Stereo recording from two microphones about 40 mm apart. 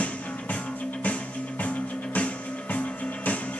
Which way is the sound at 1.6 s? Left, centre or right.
Left.